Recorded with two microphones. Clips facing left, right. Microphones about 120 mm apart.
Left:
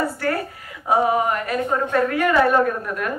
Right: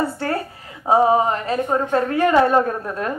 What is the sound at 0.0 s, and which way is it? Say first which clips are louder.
A woman's voice: even; 30° right (ahead or behind).